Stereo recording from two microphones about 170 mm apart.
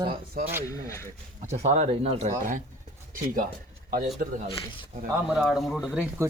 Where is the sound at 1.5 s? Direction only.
40° right (ahead or behind).